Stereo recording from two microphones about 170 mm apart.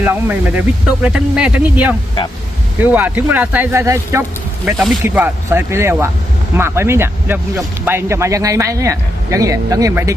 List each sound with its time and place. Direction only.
0.0 s speech: 10° right (ahead or behind)